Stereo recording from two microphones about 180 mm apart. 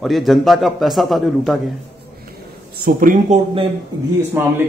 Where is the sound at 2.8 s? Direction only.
50° right (ahead or behind).